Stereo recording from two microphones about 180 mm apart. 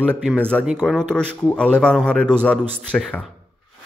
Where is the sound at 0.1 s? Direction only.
5° left (ahead or behind).